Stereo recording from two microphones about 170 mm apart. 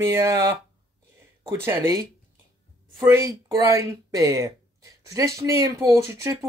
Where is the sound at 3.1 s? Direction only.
20° right (ahead or behind).